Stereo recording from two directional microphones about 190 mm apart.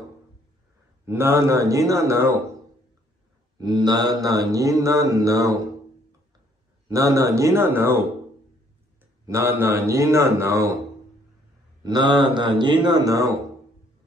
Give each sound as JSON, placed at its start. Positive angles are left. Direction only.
{"t": 1.0, "sound": "mantra", "side_deg": -15}
{"t": 3.5, "sound": "mantra", "side_deg": -20}
{"t": 6.9, "sound": "mantra", "side_deg": -15}
{"t": 9.2, "sound": "mantra", "side_deg": -15}
{"t": 11.8, "sound": "speech", "side_deg": -20}